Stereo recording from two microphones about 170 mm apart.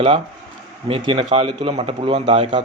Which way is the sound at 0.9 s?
30° right (ahead or behind).